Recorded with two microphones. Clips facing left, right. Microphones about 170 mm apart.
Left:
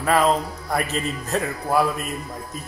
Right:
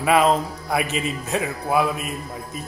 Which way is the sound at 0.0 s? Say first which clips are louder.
Right 1 dB; 5° right (ahead or behind).